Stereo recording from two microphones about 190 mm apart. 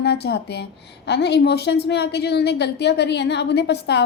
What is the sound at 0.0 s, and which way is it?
A woman's voice, 60° left (ahead or behind).